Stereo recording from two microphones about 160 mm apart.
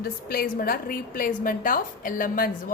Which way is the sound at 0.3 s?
65° left (ahead or behind).